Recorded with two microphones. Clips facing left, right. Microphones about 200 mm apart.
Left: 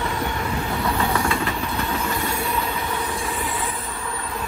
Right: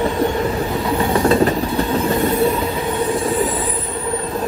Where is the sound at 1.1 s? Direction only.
35° right (ahead or behind).